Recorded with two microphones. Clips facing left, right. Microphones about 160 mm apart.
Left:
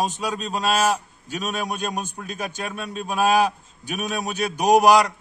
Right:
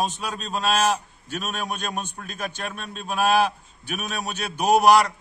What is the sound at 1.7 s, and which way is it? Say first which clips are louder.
A man's voice: left 3 dB; 10° left (ahead or behind).